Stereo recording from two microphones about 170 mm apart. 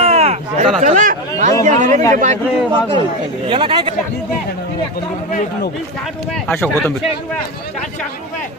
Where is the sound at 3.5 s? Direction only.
30° right (ahead or behind).